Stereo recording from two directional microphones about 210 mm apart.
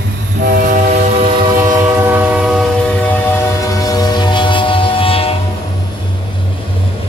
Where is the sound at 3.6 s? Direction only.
15° left (ahead or behind).